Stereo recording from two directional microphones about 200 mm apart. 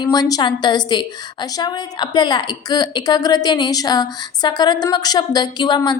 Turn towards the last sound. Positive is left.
turn(degrees=20)  # may be behind; listen again after turning